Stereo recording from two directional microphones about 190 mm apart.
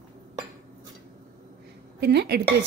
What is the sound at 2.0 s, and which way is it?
Speech, 60° right (ahead or behind).